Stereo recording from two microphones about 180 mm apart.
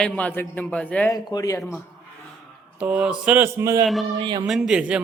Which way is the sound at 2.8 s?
5° right (ahead or behind).